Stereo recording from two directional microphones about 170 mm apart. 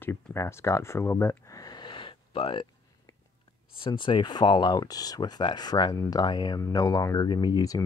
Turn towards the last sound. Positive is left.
turn(degrees=20)  # may be behind; listen again after turning